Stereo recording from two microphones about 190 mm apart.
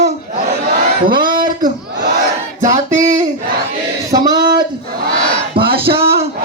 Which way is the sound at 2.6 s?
40° right (ahead or behind).